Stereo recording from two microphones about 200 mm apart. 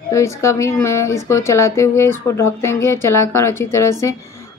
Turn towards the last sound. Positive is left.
turn(degrees=15)  # may be behind; listen again after turning